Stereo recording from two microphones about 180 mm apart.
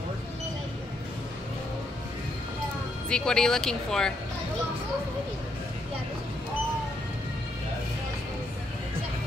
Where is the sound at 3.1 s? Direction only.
5° left (ahead or behind).